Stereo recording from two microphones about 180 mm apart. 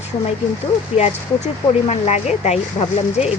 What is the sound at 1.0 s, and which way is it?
Speech, 40° left (ahead or behind).